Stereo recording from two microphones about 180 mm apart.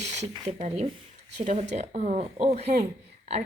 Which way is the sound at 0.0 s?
40° right (ahead or behind).